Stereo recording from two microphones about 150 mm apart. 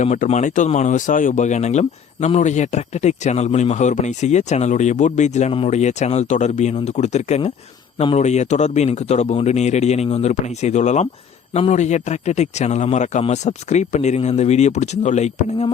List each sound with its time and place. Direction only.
0.0 s speech: 50° left (ahead or behind)